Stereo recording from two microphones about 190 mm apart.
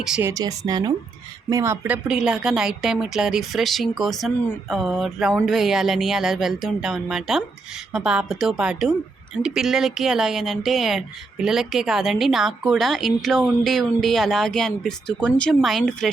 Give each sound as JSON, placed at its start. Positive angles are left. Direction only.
{"t": 0.0, "sound": "speech", "side_deg": -5}